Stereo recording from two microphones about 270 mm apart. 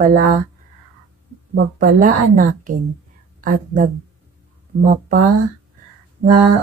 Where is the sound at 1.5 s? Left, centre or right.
Right.